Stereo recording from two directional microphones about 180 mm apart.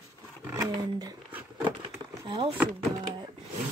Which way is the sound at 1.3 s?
10° right (ahead or behind).